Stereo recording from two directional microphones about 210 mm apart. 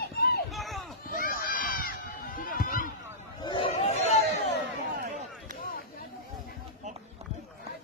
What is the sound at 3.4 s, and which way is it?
Chatter, 25° left (ahead or behind).